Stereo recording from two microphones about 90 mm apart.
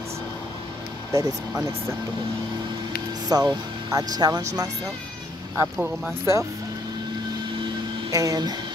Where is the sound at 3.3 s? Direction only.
45° right (ahead or behind).